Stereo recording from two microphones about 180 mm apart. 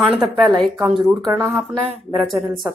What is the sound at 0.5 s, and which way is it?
Speech, 25° right (ahead or behind).